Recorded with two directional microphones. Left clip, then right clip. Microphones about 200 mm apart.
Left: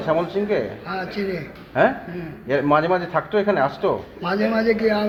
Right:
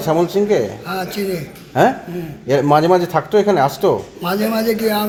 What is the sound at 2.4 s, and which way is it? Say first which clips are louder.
Speech: right 5 dB; 75° right (ahead or behind).